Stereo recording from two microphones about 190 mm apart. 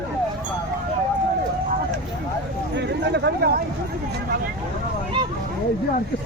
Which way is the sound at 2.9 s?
60° right (ahead or behind).